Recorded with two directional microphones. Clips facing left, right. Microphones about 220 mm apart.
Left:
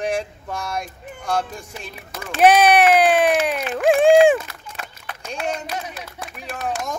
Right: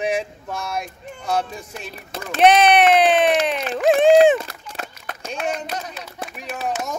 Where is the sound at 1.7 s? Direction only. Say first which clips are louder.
Right 2 dB; 5° left (ahead or behind).